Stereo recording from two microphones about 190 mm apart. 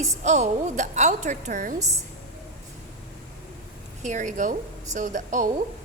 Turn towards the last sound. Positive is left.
turn(degrees=-40)  # may be behind; listen again after turning